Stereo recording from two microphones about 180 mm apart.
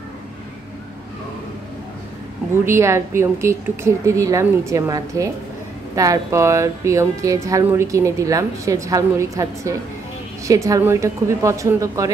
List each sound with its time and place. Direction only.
2.6 s speech: 15° right (ahead or behind)